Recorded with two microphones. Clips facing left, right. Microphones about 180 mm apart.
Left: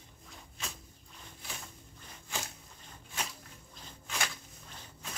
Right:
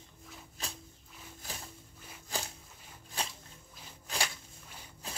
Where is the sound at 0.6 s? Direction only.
35° right (ahead or behind).